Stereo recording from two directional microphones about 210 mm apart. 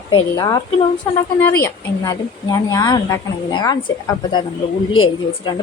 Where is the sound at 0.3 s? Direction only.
15° left (ahead or behind).